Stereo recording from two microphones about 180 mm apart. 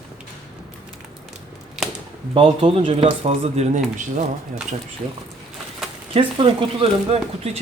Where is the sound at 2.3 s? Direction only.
30° right (ahead or behind).